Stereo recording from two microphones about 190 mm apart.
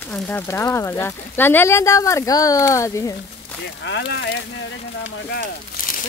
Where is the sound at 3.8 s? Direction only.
65° left (ahead or behind).